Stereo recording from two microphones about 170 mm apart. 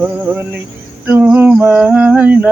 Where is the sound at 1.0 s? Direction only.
10° right (ahead or behind).